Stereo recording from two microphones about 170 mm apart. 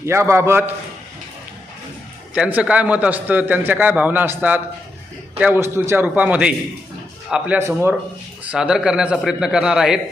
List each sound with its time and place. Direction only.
0.0 s a man's voice: 15° right (ahead or behind)
2.3 s a man's voice: 5° right (ahead or behind)